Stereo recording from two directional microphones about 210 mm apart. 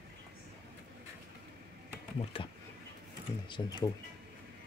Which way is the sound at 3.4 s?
20° left (ahead or behind).